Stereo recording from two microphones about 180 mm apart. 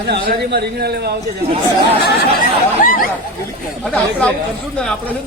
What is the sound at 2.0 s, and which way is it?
Speech, 65° left (ahead or behind).